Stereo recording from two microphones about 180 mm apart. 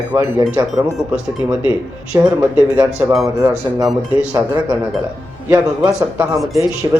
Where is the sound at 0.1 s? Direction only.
20° right (ahead or behind).